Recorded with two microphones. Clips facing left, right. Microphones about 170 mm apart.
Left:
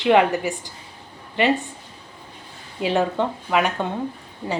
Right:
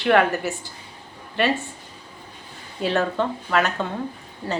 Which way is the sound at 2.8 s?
15° left (ahead or behind).